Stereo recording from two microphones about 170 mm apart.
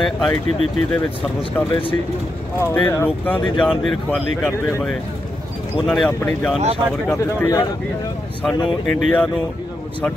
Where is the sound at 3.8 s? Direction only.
Centre (ahead or behind).